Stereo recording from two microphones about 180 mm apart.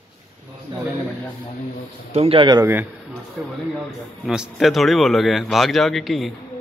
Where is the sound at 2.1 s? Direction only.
30° right (ahead or behind).